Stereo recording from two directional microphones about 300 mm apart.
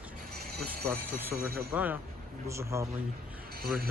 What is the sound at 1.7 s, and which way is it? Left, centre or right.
Speech, centre.